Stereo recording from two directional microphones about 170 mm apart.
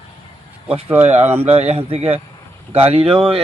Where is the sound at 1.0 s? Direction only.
40° right (ahead or behind).